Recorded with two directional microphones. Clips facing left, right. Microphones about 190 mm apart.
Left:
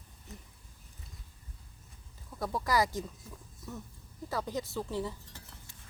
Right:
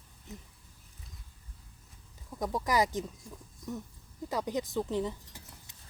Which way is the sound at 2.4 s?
15° right (ahead or behind).